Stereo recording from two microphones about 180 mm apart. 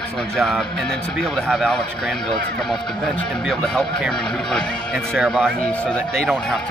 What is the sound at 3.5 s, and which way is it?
Speech, centre (ahead or behind).